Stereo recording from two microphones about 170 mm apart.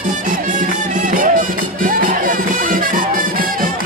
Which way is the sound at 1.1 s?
55° right (ahead or behind).